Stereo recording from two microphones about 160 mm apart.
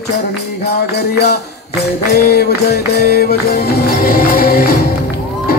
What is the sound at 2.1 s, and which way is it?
Music, 80° left.